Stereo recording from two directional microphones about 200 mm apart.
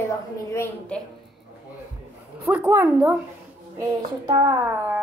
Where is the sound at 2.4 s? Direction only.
10° right (ahead or behind).